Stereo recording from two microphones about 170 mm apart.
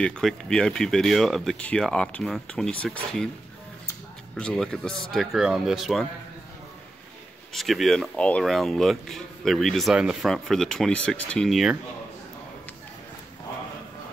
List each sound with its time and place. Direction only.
0.0 s speech: 5° left (ahead or behind)
4.4 s speech: 5° left (ahead or behind)
7.5 s speech: centre (ahead or behind)